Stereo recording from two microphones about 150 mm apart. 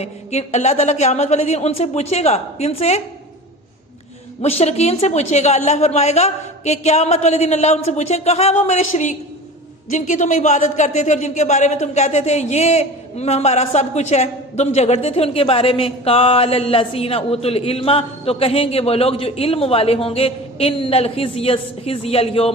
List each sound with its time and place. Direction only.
0.0 s a woman's voice: 45° left (ahead or behind)
4.4 s a woman's voice: 45° left (ahead or behind)